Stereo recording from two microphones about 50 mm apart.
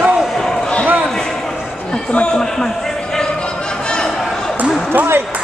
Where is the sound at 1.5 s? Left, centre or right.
Centre.